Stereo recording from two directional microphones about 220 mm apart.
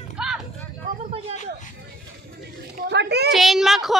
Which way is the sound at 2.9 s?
50° right (ahead or behind).